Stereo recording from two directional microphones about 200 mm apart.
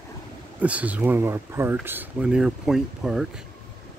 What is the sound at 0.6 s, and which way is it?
Speech, 5° right (ahead or behind).